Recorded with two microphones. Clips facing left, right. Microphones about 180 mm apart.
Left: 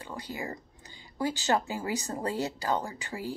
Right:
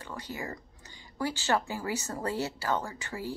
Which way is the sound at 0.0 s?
15° left (ahead or behind).